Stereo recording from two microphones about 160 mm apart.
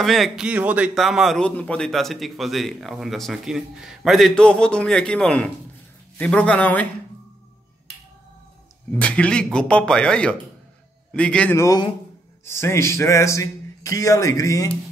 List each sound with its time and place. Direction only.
0.0 s a man's voice: centre (ahead or behind)
8.9 s speech: 10° left (ahead or behind)
11.5 s speech: 20° left (ahead or behind)